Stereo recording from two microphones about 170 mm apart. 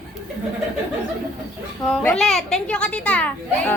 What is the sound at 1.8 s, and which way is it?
A child's voice, 5° left (ahead or behind).